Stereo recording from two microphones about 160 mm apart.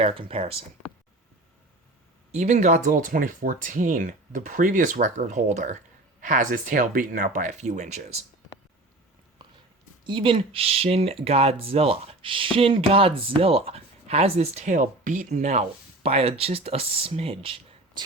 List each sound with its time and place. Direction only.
0.0 s speech: 35° right (ahead or behind)
2.3 s speech: 45° right (ahead or behind)
10.1 s speech: 30° right (ahead or behind)